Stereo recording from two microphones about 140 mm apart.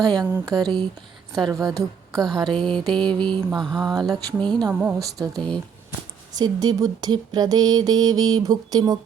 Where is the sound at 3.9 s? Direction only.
30° right (ahead or behind).